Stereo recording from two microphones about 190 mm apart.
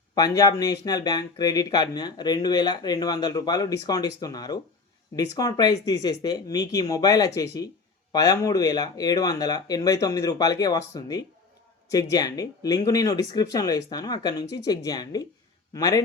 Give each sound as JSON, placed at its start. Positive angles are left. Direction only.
{"t": 0.1, "sound": "speech", "side_deg": 20}